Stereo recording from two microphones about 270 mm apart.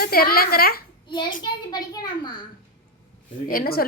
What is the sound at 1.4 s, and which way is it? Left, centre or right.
Speech, centre.